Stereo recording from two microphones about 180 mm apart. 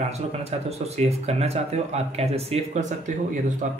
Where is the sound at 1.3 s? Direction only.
35° right (ahead or behind).